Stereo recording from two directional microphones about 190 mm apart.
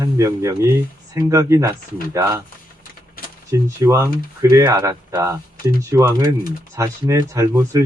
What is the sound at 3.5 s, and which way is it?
Speech, 15° right (ahead or behind).